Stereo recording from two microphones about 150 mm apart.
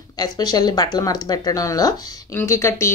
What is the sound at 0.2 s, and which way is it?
Speech, 25° left (ahead or behind).